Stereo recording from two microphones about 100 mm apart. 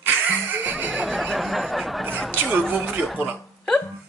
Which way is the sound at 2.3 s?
15° right (ahead or behind).